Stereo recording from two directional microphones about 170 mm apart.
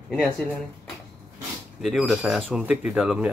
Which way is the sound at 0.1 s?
5° left (ahead or behind).